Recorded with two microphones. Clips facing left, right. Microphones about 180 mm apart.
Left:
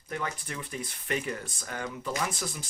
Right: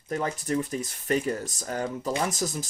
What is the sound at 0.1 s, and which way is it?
Speech, 40° right (ahead or behind).